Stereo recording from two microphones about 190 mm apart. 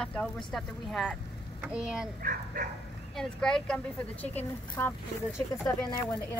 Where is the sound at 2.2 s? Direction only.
50° right (ahead or behind).